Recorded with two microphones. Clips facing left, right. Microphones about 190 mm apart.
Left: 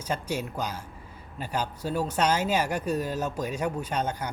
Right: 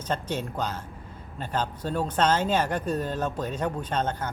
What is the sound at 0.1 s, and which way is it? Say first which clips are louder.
Speech: right 1 dB; 10° left (ahead or behind).